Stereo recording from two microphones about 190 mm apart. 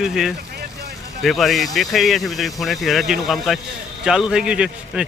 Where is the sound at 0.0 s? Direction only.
Centre (ahead or behind).